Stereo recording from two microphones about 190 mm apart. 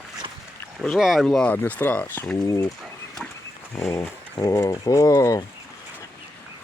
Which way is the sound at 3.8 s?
15° left (ahead or behind).